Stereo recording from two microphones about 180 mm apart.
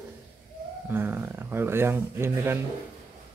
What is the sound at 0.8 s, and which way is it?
Speech, 10° right (ahead or behind).